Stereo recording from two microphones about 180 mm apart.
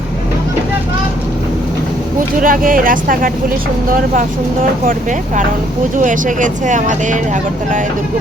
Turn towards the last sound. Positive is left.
turn(degrees=-45)  # may be behind; listen again after turning